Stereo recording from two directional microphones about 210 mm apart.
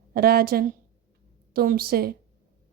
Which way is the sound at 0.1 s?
45° right (ahead or behind).